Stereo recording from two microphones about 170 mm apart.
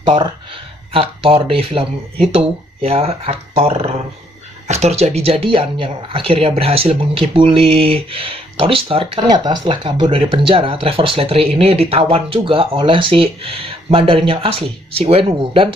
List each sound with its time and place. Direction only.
0.0 s speech: 30° right (ahead or behind)